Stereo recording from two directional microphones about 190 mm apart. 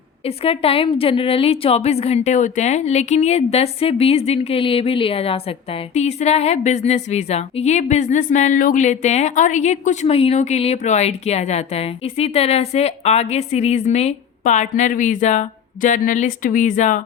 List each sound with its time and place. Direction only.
0.3 s a woman's voice: 30° left (ahead or behind)